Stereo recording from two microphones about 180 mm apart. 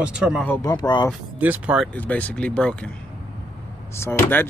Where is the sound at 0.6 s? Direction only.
25° left (ahead or behind).